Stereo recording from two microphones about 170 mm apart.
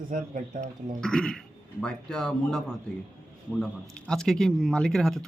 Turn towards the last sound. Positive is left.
turn(degrees=0)  # may be behind; listen again after turning